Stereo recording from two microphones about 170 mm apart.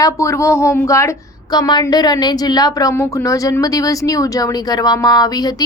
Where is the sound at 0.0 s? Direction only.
15° left (ahead or behind).